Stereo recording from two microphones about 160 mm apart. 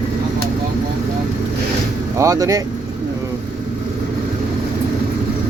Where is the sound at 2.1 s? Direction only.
20° right (ahead or behind).